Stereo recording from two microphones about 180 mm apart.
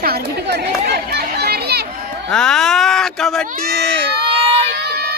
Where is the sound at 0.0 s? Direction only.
65° right (ahead or behind).